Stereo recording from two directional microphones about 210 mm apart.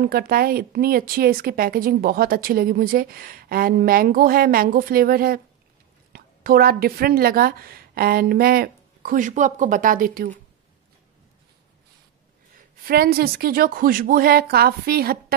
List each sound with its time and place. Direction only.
0.0 s a woman's voice: 45° right (ahead or behind)
12.8 s a woman's voice: 45° right (ahead or behind)